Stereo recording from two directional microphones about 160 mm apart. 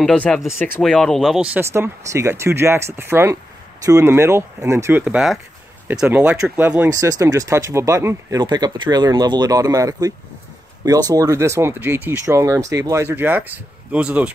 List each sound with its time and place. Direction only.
0.0 s speech: 5° left (ahead or behind)